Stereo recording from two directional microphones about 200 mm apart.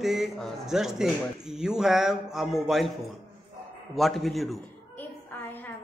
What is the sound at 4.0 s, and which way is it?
Speech, centre (ahead or behind).